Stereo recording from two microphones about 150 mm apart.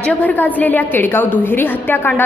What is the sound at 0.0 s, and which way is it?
A woman's voice, 10° left (ahead or behind).